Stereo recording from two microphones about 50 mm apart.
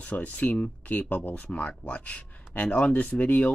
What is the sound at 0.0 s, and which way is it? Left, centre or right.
Speech, left.